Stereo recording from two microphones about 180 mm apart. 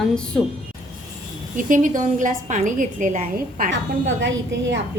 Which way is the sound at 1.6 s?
45° right (ahead or behind).